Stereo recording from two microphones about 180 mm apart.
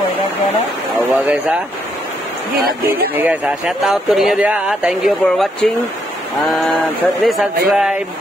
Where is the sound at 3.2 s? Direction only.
5° right (ahead or behind).